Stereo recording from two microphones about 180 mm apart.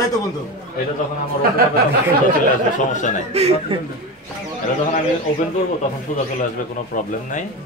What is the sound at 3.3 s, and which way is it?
Speech, 35° right (ahead or behind).